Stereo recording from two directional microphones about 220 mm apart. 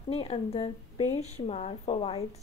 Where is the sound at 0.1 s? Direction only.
25° left (ahead or behind).